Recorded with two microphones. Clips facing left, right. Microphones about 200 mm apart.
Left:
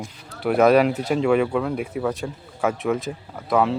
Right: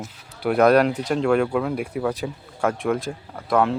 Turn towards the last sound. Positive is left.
turn(degrees=0)  # may be behind; listen again after turning